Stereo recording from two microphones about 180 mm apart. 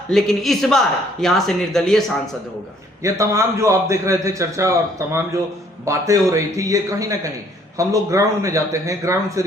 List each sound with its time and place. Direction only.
0.1 s speech: centre (ahead or behind)
3.0 s a man's voice: 15° right (ahead or behind)